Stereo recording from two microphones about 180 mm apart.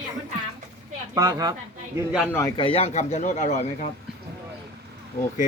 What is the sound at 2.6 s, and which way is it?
Speech, 30° left (ahead or behind).